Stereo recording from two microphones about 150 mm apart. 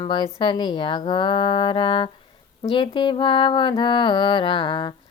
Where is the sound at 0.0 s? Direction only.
30° left (ahead or behind).